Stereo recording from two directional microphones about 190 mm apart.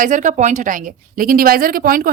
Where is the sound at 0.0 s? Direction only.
40° right (ahead or behind).